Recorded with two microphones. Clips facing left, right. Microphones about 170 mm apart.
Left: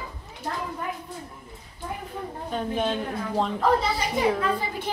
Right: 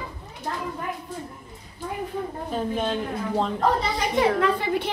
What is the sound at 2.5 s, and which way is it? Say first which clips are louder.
Speech: even; centre (ahead or behind).